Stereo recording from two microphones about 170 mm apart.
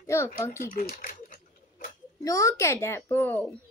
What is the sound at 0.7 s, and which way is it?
Typewriter, 50° left (ahead or behind).